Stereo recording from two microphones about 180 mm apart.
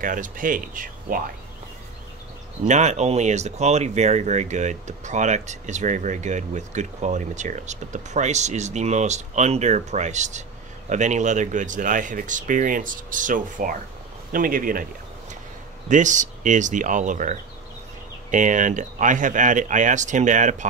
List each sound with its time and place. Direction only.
0.0 s speech: 50° right (ahead or behind)
2.6 s speech: 40° right (ahead or behind)
15.9 s speech: 45° right (ahead or behind)